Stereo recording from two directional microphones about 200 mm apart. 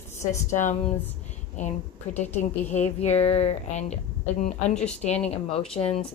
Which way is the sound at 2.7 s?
35° left (ahead or behind).